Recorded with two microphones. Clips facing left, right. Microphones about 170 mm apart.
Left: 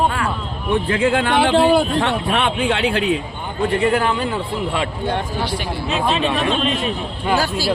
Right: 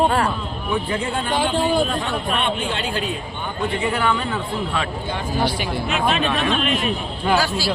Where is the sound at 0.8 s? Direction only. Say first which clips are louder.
Left 6 dB; 90° left.